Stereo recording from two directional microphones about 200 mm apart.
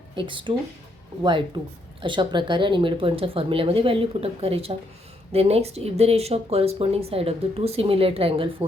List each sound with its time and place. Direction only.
0.2 s speech: 25° right (ahead or behind)